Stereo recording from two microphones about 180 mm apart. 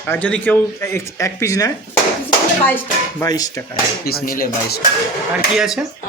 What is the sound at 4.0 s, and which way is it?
Speech, 55° left (ahead or behind).